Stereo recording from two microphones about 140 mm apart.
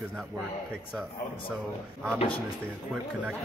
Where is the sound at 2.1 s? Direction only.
40° left (ahead or behind).